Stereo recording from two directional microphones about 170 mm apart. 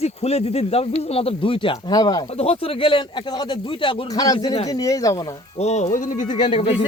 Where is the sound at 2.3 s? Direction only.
35° left (ahead or behind); by 5.1 s 20° left (ahead or behind).